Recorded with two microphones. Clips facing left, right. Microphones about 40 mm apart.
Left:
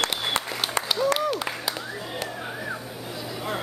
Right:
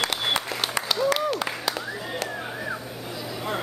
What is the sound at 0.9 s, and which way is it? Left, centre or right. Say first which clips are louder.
Applause: even; centre.